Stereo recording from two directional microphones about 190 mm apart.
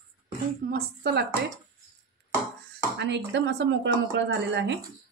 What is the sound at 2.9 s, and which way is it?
Speech, 65° right (ahead or behind).